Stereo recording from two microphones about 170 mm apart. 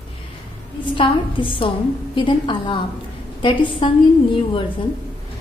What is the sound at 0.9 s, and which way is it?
A woman's voice, 30° left (ahead or behind).